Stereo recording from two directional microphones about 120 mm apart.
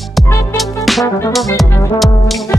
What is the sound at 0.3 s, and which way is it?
Music, 20° left (ahead or behind).